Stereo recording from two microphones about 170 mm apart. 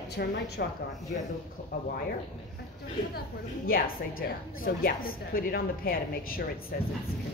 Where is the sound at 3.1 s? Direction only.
60° left (ahead or behind).